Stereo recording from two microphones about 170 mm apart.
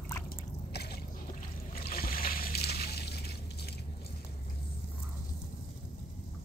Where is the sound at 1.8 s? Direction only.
60° left (ahead or behind).